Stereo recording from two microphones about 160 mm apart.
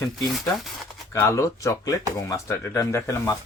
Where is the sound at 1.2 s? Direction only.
20° left (ahead or behind).